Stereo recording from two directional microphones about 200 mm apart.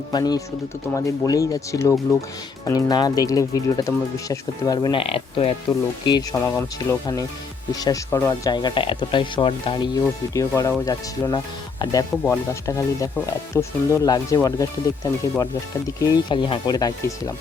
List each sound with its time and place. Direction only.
0.1 s speech: 20° left (ahead or behind)